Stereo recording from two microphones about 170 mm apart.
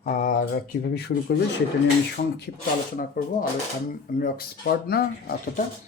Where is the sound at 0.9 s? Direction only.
80° left.